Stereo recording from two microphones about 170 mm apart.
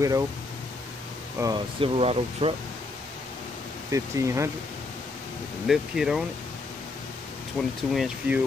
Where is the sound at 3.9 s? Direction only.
15° right (ahead or behind).